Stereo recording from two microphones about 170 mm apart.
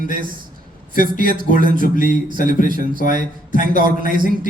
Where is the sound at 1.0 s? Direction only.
60° right (ahead or behind).